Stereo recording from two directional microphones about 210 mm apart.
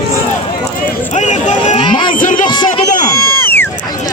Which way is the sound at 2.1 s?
40° left (ahead or behind).